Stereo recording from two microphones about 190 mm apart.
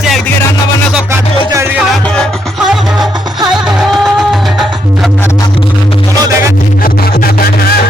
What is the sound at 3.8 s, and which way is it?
Music, centre (ahead or behind).